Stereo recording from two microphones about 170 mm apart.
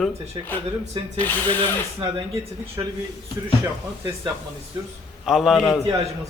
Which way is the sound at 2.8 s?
20° right (ahead or behind).